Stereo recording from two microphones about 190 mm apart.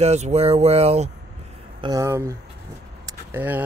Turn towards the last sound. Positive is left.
turn(degrees=-10)  # may be behind; listen again after turning